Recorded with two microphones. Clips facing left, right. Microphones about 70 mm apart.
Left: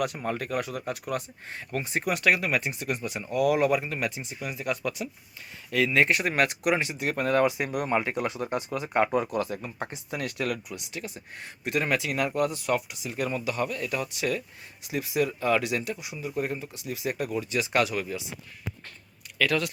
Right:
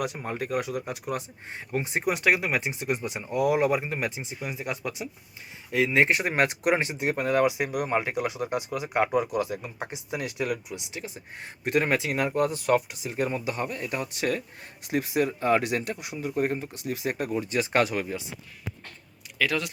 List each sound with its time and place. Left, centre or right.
0.0 s speech: centre
7.2 s speech: centre
11.6 s speech: right
19.4 s speech: centre